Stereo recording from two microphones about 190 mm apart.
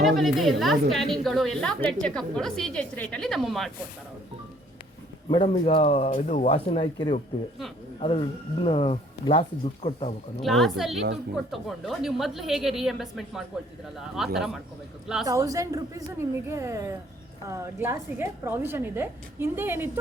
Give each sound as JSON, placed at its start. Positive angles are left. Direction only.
{"t": 0.0, "sound": "a woman's voice", "side_deg": 0}
{"t": 5.3, "sound": "speech", "side_deg": 30}
{"t": 10.4, "sound": "a woman's voice", "side_deg": 0}
{"t": 15.3, "sound": "a woman's voice", "side_deg": -15}